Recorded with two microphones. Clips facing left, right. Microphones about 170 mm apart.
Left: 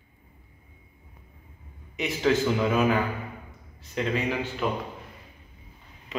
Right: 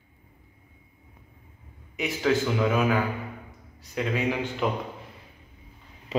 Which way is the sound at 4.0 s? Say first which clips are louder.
Left 1 dB; 5° right (ahead or behind).